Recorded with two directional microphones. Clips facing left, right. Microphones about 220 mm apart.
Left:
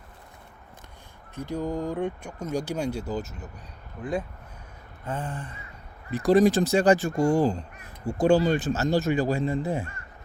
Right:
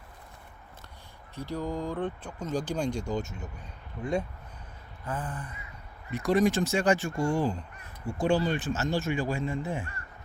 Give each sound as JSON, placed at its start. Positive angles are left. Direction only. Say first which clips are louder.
{"t": 1.4, "sound": "speech", "louder": "left 3 dB", "side_deg": 15}
{"t": 5.0, "sound": "a sound", "louder": "left 3 dB", "side_deg": 25}
{"t": 6.1, "sound": "speech", "louder": "left 5 dB", "side_deg": 35}